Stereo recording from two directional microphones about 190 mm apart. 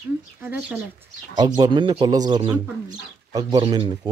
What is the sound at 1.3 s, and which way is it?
Speech, 20° right (ahead or behind).